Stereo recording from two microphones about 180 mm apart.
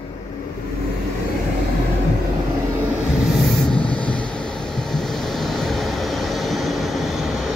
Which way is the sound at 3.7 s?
5° left (ahead or behind).